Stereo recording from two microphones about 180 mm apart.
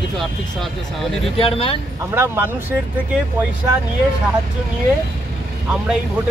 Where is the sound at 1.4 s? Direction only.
30° left (ahead or behind).